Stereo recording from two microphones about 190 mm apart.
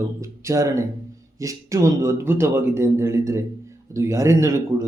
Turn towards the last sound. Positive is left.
turn(degrees=-15)  # may be behind; listen again after turning